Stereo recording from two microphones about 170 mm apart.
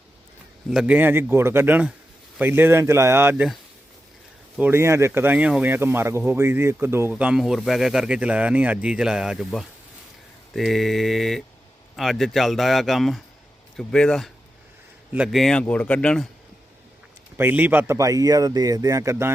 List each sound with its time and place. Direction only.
0.7 s speech: 5° right (ahead or behind)
4.5 s speech: 10° right (ahead or behind); by 16.3 s 5° left (ahead or behind)
17.3 s speech: 10° right (ahead or behind)